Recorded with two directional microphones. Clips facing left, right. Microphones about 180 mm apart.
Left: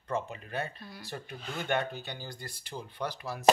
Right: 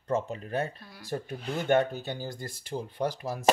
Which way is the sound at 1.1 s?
30° right (ahead or behind).